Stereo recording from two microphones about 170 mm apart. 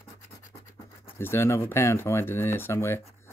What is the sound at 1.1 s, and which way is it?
Speech, 15° left (ahead or behind).